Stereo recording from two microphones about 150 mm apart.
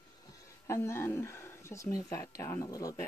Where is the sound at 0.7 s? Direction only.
15° left (ahead or behind).